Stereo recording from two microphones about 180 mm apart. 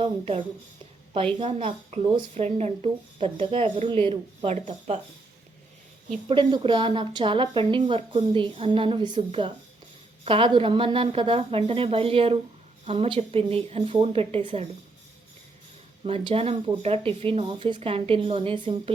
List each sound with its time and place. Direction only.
0.0 s a woman's voice: 35° right (ahead or behind)
6.2 s a woman's voice: 25° right (ahead or behind)
16.0 s a woman's voice: 30° right (ahead or behind)